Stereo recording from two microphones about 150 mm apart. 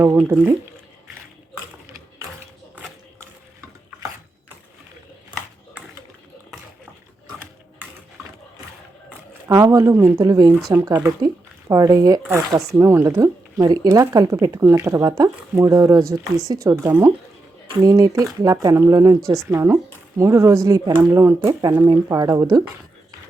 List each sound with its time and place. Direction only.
0.0 s speech: 15° right (ahead or behind)
9.5 s speech: 20° right (ahead or behind)